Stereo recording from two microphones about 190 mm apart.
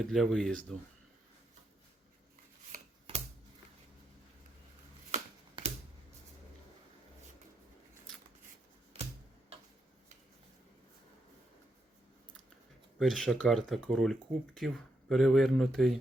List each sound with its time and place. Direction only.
0.0 s speech: centre (ahead or behind)
5.1 s shuffling cards: 35° right (ahead or behind)
13.0 s speech: centre (ahead or behind)